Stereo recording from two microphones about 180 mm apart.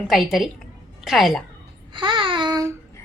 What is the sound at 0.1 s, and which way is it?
A woman's voice, centre (ahead or behind).